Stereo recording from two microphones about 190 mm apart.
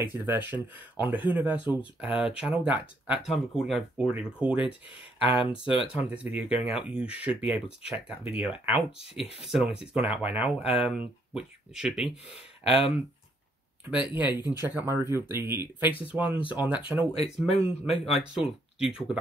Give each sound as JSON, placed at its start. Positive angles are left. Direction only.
{"t": 0.0, "sound": "speech", "side_deg": -10}
{"t": 4.9, "sound": "speech", "side_deg": 30}
{"t": 5.9, "sound": "speech", "side_deg": -5}
{"t": 13.8, "sound": "speech", "side_deg": -10}
{"t": 14.3, "sound": "speech", "side_deg": 20}
{"t": 14.6, "sound": "speech", "side_deg": -10}
{"t": 17.5, "sound": "speech", "side_deg": 30}
{"t": 18.2, "sound": "speech", "side_deg": -5}